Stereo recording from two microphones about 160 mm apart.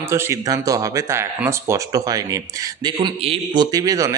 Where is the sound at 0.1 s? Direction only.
15° right (ahead or behind).